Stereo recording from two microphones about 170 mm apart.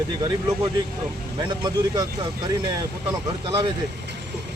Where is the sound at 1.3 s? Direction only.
25° right (ahead or behind).